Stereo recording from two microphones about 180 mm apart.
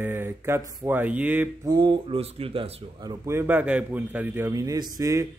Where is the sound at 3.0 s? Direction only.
20° right (ahead or behind).